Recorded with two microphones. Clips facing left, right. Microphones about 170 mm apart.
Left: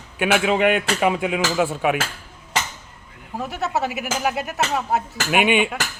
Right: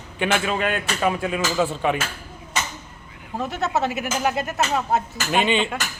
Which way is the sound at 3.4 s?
10° left (ahead or behind).